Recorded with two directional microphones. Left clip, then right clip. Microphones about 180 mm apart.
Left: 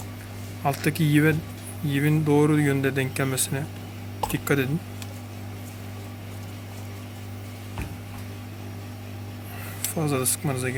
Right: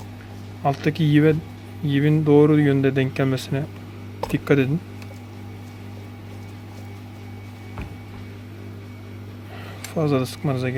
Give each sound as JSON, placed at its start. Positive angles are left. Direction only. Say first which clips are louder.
{"t": 0.6, "sound": "speech", "louder": "right 3 dB", "side_deg": -35}
{"t": 9.9, "sound": "speech", "louder": "right 5 dB", "side_deg": -35}